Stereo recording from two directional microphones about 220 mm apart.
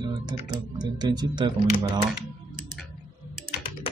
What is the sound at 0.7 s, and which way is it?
Speech, 20° right (ahead or behind).